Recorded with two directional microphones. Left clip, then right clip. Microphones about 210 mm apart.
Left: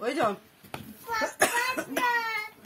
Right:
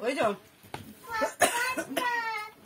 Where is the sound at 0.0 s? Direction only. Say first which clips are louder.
Left 1 dB; 20° left (ahead or behind).